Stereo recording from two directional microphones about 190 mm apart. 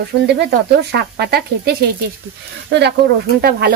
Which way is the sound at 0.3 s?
60° right (ahead or behind).